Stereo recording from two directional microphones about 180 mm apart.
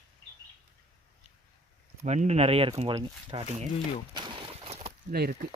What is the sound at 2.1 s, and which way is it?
Speech, 40° right (ahead or behind).